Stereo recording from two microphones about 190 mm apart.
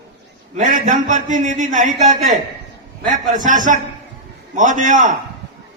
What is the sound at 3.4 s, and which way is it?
A man's voice, 45° right (ahead or behind).